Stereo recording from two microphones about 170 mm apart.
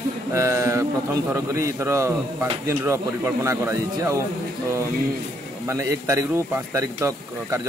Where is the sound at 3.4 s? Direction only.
15° right (ahead or behind).